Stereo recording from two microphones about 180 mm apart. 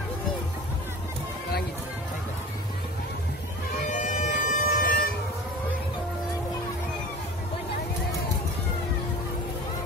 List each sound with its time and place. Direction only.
3.8 s bagpipes: 45° left (ahead or behind)